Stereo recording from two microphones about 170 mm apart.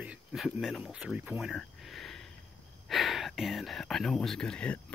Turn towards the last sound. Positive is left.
turn(degrees=5)  # may be behind; listen again after turning